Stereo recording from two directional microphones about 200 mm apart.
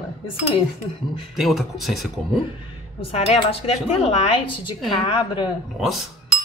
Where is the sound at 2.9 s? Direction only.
30° left (ahead or behind).